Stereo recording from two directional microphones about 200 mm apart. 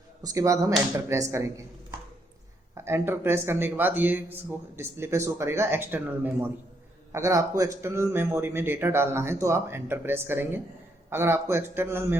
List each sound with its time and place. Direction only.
0.2 s a man's voice: 15° right (ahead or behind)